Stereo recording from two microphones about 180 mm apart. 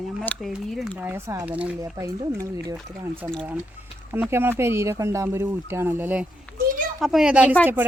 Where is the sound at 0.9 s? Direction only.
15° right (ahead or behind).